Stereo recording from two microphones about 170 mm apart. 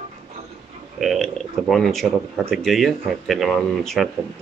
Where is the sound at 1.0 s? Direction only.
Centre (ahead or behind).